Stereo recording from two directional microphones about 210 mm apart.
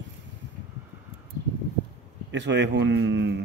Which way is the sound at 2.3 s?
55° right (ahead or behind).